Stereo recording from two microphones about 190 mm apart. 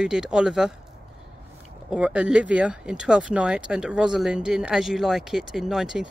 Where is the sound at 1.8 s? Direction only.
5° right (ahead or behind).